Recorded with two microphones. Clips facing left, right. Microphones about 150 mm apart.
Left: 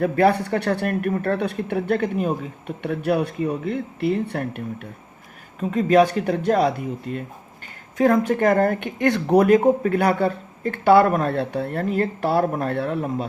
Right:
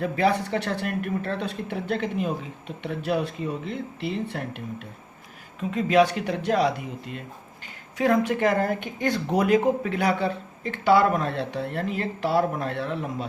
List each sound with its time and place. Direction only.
0.0 s speech: 60° left (ahead or behind)